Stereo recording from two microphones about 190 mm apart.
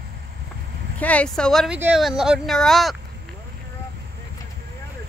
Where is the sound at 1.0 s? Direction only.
5° left (ahead or behind).